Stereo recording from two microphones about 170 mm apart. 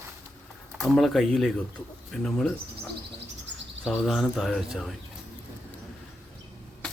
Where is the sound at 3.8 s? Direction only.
Centre (ahead or behind).